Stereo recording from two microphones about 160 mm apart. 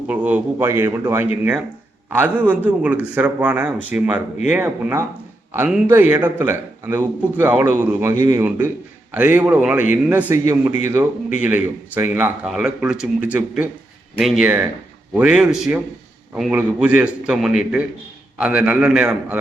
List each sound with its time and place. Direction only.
0.1 s a man's voice: 10° right (ahead or behind)